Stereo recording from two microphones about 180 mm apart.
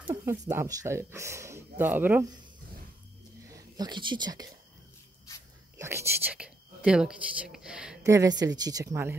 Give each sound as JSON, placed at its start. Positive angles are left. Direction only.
{"t": 0.0, "sound": "speech", "side_deg": -15}
{"t": 3.4, "sound": "speech", "side_deg": -20}
{"t": 5.8, "sound": "speech", "side_deg": -15}
{"t": 8.0, "sound": "speech", "side_deg": -15}